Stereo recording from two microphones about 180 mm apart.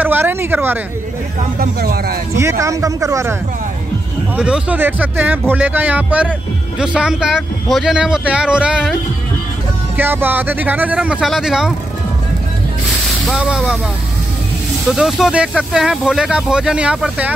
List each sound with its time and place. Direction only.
0.0 s speech: 10° right (ahead or behind)
1.6 s speech: 55° right (ahead or behind)
2.3 s speech: 15° right (ahead or behind)
4.4 s speech: 5° right (ahead or behind)
9.9 s speech: 10° right (ahead or behind)
13.3 s speech: 5° right (ahead or behind)
14.9 s speech: centre (ahead or behind)